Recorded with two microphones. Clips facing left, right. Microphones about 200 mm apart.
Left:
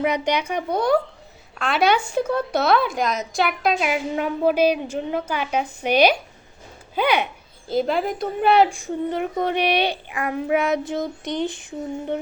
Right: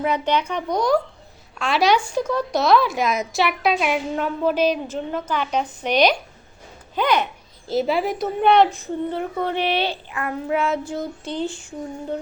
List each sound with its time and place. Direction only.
0.0 s a woman's voice: 15° left (ahead or behind)
7.7 s a woman's voice: 5° right (ahead or behind); by 11.6 s 20° left (ahead or behind)